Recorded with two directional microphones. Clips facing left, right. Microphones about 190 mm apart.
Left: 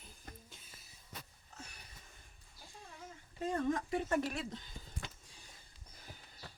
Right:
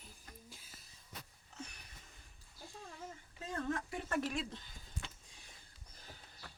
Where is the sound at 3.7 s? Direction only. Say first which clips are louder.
Left 2 dB; 15° left (ahead or behind).